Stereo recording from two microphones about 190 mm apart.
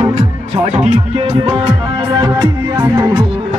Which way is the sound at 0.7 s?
40° right (ahead or behind).